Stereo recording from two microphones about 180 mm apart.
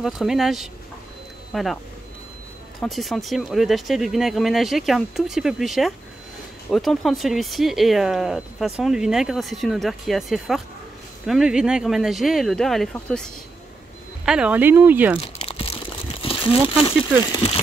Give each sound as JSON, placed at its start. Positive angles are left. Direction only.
{"t": 0.0, "sound": "speech", "side_deg": 0}
{"t": 2.8, "sound": "speech", "side_deg": 0}
{"t": 15.1, "sound": "crumpling", "side_deg": 35}
{"t": 17.3, "sound": "speech", "side_deg": 30}